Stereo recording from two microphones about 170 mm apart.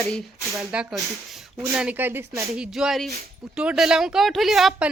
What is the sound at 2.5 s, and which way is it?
Speech, centre (ahead or behind).